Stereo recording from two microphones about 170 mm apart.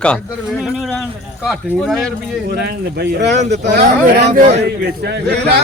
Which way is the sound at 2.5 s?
70° right (ahead or behind).